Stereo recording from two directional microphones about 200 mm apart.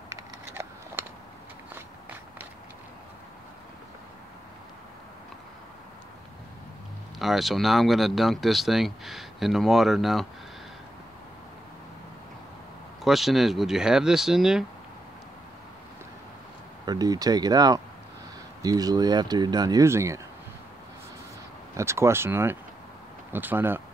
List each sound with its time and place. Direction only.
0.1 s a sound: 10° right (ahead or behind)
7.2 s speech: centre (ahead or behind)
13.0 s speech: centre (ahead or behind)
16.8 s speech: 20° right (ahead or behind)
21.7 s speech: 15° right (ahead or behind)